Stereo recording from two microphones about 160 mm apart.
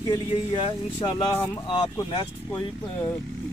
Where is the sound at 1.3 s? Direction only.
20° left (ahead or behind).